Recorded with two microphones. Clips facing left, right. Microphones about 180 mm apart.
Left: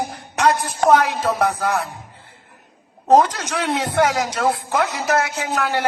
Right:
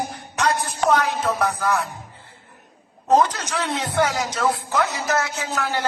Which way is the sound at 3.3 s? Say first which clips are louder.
Left 3 dB; 60° left (ahead or behind).